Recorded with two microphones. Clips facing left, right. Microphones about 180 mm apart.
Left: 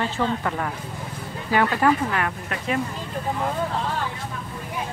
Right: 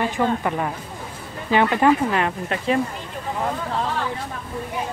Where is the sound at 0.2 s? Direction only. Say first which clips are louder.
Right 3 dB; 15° right (ahead or behind).